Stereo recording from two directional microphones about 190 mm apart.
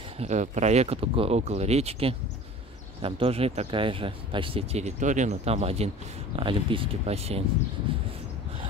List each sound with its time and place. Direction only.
0.2 s speech: 40° right (ahead or behind)